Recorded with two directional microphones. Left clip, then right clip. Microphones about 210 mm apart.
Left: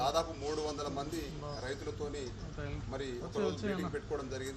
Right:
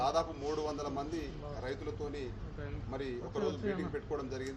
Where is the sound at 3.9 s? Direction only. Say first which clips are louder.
Even; centre (ahead or behind).